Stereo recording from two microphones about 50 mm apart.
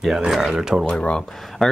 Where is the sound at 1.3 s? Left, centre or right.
Centre.